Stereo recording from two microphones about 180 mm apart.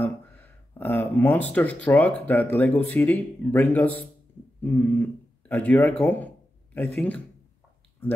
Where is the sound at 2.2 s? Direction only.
10° left (ahead or behind).